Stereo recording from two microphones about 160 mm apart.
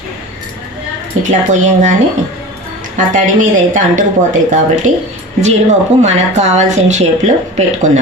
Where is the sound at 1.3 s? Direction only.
50° right (ahead or behind).